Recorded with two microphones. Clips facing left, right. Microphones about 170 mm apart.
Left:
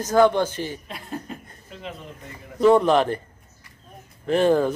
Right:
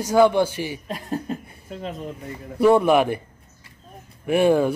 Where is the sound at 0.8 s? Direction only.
40° right (ahead or behind).